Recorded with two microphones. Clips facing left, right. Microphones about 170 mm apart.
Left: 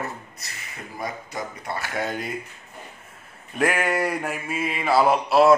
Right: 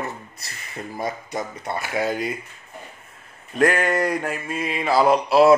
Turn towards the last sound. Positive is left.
turn(degrees=0)  # may be behind; listen again after turning